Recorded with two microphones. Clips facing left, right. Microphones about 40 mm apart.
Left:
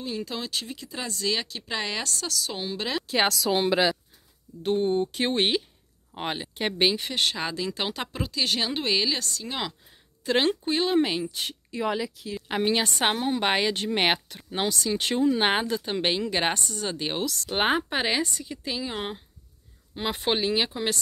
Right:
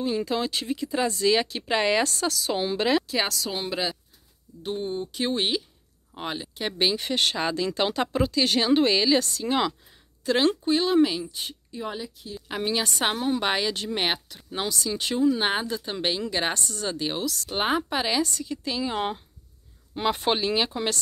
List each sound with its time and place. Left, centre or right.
0.0 s speech: centre
1.5 s speech: centre
3.7 s speech: left
4.6 s speech: left
7.0 s speech: centre
9.2 s speech: centre
10.2 s speech: left
11.3 s a woman's voice: left
12.4 s speech: left
13.1 s speech: left
13.5 s speech: left
15.9 s speech: left
17.2 s speech: left; by 18.9 s centre
18.9 s speech: centre